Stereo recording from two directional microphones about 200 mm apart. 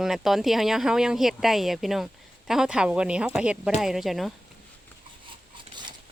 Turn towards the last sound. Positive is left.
turn(degrees=0)  # may be behind; listen again after turning